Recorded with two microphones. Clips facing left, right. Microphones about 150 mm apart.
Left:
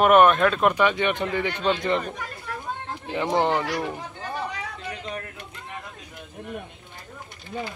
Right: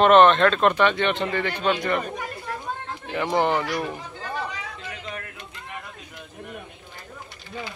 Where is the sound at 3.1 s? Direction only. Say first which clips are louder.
Even; 20° left (ahead or behind).